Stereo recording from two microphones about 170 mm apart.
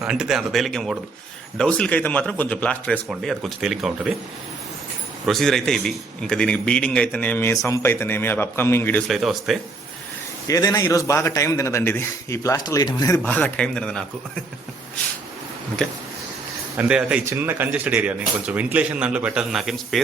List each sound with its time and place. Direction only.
0.0 s speech: 5° right (ahead or behind)
5.2 s a man's voice: centre (ahead or behind)
10.4 s a man's voice: 20° left (ahead or behind)
13.1 s a man's voice: 10° left (ahead or behind)
16.7 s speech: 5° right (ahead or behind)